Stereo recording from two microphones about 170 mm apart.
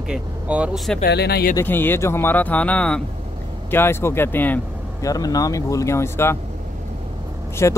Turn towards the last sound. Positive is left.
turn(degrees=15)  # may be behind; listen again after turning